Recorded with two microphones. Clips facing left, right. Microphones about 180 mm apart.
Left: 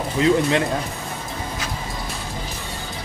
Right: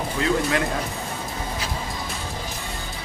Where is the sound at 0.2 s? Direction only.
20° left (ahead or behind).